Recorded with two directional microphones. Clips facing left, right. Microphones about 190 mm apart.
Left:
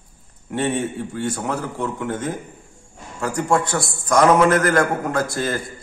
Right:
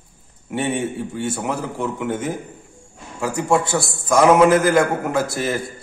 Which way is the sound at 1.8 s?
15° right (ahead or behind).